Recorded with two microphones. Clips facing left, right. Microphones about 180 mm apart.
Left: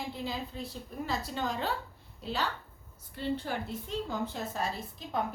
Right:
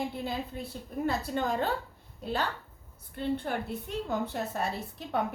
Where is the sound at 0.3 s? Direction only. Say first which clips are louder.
Right 2 dB; 55° right (ahead or behind).